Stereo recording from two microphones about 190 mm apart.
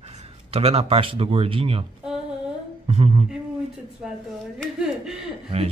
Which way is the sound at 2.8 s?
30° right (ahead or behind).